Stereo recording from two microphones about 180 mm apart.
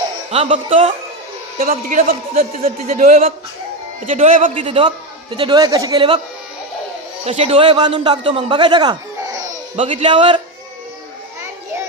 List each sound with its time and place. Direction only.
0.3 s a man's voice: 40° right (ahead or behind)
1.6 s a man's voice: 45° right (ahead or behind); by 6.1 s 25° right (ahead or behind)
7.3 s a man's voice: 35° right (ahead or behind)